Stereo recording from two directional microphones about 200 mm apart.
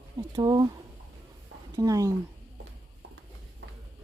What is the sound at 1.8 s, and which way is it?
Speech, 15° right (ahead or behind).